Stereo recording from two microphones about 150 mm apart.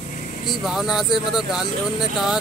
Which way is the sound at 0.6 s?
Centre (ahead or behind).